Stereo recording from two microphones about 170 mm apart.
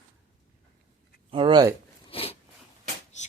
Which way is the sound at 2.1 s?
35° left (ahead or behind).